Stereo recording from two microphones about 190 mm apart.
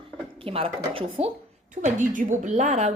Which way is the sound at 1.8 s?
45° right (ahead or behind).